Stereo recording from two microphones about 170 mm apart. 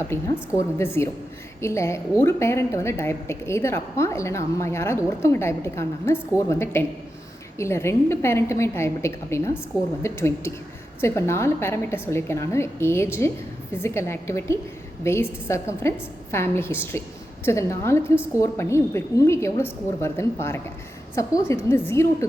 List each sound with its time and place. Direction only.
0.1 s a woman's voice: 15° left (ahead or behind)